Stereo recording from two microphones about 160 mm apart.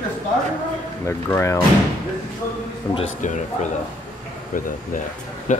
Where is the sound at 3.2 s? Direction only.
50° left (ahead or behind).